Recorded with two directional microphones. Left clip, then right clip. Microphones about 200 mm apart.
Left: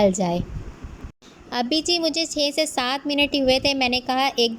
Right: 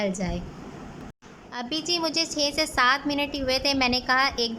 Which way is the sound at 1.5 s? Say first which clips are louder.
Left 6 dB; 20° left (ahead or behind).